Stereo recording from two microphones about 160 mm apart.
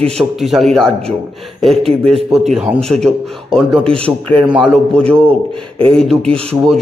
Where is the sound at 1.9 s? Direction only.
40° right (ahead or behind).